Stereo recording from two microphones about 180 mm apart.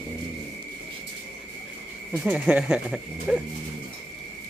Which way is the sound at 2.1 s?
10° right (ahead or behind).